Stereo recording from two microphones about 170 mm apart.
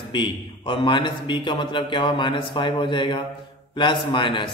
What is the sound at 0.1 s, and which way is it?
A man's voice, 30° left (ahead or behind).